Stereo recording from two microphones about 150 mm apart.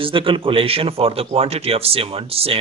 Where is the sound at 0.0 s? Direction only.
35° right (ahead or behind).